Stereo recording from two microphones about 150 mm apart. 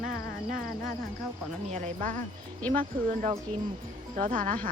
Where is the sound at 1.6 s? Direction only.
55° right (ahead or behind).